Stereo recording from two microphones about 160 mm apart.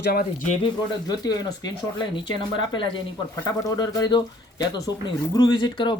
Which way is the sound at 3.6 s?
25° left (ahead or behind).